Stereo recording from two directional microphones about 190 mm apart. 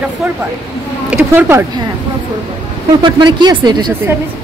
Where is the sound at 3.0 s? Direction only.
25° right (ahead or behind).